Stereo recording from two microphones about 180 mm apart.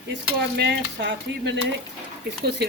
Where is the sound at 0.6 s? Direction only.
70° right (ahead or behind).